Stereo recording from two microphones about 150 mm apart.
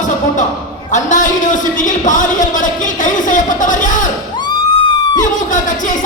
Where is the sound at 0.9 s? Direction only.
55° left (ahead or behind).